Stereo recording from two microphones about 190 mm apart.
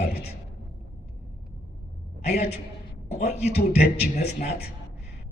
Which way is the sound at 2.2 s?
35° left (ahead or behind).